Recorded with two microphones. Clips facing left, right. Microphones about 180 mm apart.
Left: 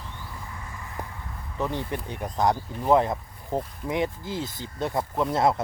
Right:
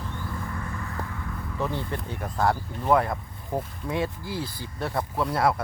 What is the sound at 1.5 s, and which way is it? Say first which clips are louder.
Speech: left 1 dB; 15° left (ahead or behind).